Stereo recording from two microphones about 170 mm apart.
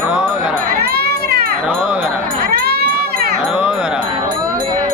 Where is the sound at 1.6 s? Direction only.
5° right (ahead or behind).